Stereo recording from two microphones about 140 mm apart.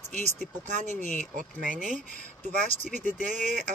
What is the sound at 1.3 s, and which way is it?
Speech, 65° right (ahead or behind).